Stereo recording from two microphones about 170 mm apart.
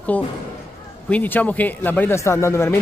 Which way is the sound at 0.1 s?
10° left (ahead or behind).